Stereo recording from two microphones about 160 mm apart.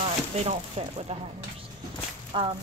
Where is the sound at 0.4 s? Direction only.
40° right (ahead or behind).